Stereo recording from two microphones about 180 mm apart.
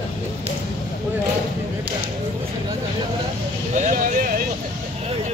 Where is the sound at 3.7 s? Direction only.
45° right (ahead or behind).